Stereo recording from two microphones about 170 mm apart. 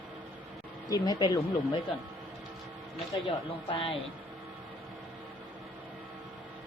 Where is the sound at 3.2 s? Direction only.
30° left (ahead or behind).